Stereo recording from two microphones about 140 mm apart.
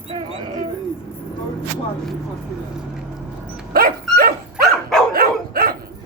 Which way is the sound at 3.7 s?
90° right.